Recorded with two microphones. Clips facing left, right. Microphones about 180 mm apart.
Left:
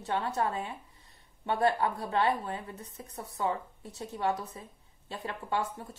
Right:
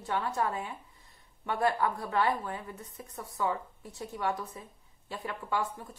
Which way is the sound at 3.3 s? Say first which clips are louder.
Even; 25° left (ahead or behind).